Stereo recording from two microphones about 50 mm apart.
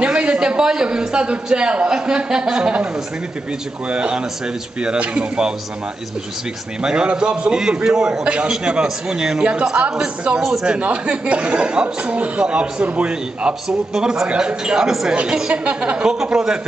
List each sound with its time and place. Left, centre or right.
0.0 s a man's voice: right
3.9 s speech: centre
6.8 s a man's voice: centre
9.4 s a man's voice: right
15.5 s a man's voice: right